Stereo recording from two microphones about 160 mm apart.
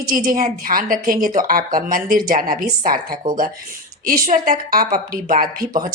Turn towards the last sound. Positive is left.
turn(degrees=-60)  # may be behind; listen again after turning